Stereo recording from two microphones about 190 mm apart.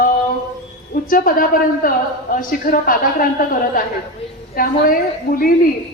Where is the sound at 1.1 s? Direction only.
45° left (ahead or behind).